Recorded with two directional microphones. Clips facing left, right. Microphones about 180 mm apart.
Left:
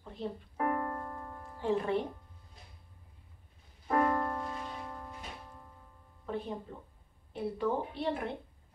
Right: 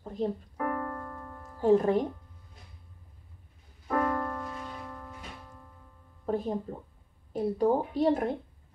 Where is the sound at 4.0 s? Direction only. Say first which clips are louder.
Even; 30° left (ahead or behind).